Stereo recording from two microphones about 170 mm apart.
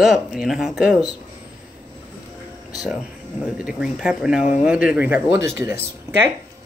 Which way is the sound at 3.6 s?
5° right (ahead or behind).